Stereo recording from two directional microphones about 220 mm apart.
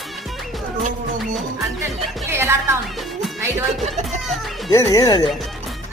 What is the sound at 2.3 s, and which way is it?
Music, 10° right (ahead or behind).